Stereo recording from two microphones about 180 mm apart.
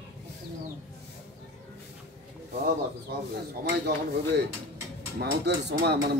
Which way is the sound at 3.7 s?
65° right (ahead or behind).